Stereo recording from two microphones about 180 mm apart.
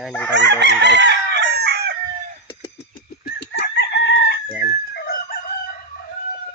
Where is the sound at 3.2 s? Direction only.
60° left (ahead or behind).